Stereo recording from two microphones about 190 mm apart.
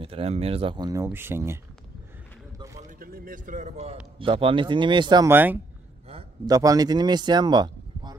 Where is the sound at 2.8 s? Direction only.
45° right (ahead or behind); by 5.3 s 25° right (ahead or behind).